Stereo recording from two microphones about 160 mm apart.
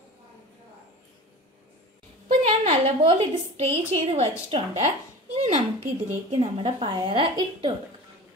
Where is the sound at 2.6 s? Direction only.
40° right (ahead or behind).